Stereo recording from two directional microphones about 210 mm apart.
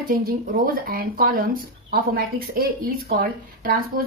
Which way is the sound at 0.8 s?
45° right (ahead or behind).